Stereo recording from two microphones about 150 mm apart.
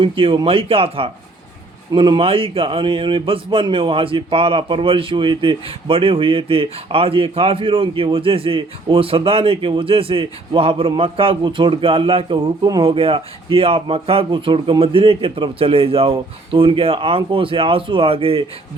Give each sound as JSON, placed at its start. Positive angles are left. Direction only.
{"t": 0.0, "sound": "speech", "side_deg": -35}